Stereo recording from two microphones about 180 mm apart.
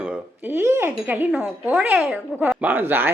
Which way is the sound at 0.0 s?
10° right (ahead or behind).